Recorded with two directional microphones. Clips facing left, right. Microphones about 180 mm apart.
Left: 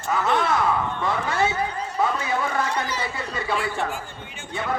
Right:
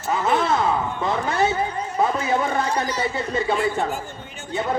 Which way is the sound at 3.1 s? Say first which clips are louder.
Right 6 dB; 25° right (ahead or behind).